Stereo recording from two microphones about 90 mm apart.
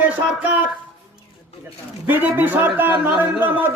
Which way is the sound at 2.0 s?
20° right (ahead or behind).